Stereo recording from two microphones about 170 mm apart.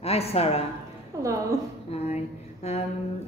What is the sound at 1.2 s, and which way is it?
Speech, 20° right (ahead or behind).